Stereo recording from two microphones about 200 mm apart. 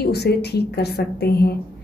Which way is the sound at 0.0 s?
55° left (ahead or behind).